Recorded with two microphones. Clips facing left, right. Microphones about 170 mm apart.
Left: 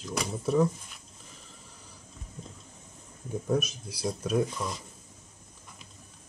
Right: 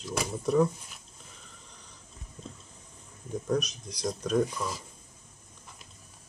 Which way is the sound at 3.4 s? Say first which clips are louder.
Left 1 dB; 5° left (ahead or behind).